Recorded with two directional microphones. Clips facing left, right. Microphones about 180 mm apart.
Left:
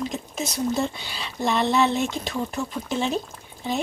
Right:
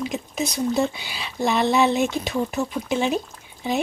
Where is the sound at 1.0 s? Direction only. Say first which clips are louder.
Right 2 dB; 5° right (ahead or behind).